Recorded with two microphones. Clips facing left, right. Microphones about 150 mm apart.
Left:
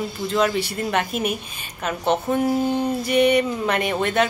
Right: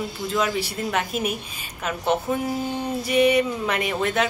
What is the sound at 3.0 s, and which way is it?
Speech, 5° right (ahead or behind).